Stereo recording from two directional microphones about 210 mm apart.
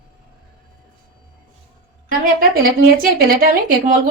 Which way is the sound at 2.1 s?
45° right (ahead or behind).